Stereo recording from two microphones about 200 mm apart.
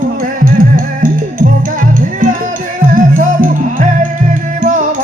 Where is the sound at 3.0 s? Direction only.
40° right (ahead or behind).